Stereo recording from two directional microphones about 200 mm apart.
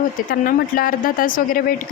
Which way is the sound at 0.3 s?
45° left (ahead or behind).